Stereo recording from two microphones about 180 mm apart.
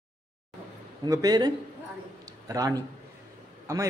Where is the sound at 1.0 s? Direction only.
20° right (ahead or behind).